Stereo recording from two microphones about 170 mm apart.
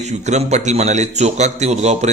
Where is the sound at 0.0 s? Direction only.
40° right (ahead or behind).